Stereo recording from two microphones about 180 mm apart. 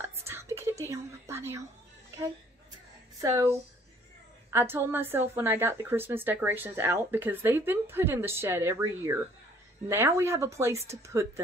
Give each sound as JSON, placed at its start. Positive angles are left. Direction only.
{"t": 0.0, "sound": "whispering", "side_deg": -15}
{"t": 3.2, "sound": "a woman's voice", "side_deg": -20}